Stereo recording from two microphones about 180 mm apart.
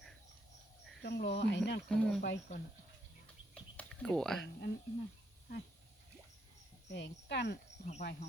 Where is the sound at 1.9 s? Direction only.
5° left (ahead or behind).